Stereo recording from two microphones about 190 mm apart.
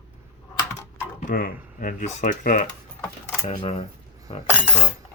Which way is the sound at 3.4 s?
30° left (ahead or behind).